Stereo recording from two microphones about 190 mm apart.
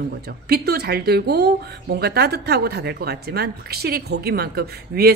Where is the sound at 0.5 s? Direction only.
55° right (ahead or behind).